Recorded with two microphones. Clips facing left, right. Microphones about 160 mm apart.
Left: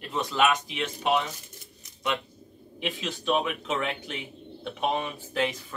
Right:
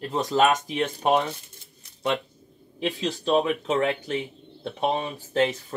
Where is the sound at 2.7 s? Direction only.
35° right (ahead or behind).